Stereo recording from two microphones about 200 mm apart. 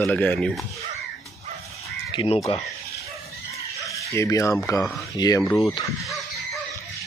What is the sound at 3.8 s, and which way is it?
Fowl, 15° left (ahead or behind).